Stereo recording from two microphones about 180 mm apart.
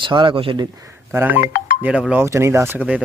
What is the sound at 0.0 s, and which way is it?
Speech, 25° right (ahead or behind).